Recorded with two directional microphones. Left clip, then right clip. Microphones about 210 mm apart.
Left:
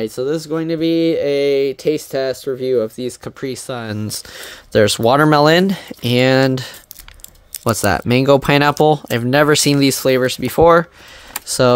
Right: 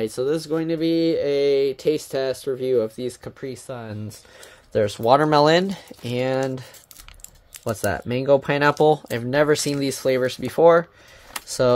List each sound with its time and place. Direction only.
0.0 s speech: 15° left (ahead or behind)
3.3 s speech: 45° left (ahead or behind)
8.7 s speech: 30° left (ahead or behind)